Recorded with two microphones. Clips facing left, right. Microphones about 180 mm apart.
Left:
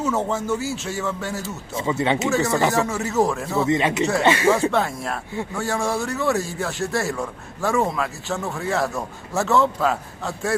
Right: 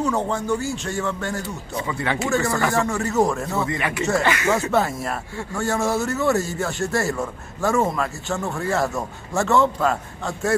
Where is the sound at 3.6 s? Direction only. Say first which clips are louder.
Left 4 dB; 20° left (ahead or behind).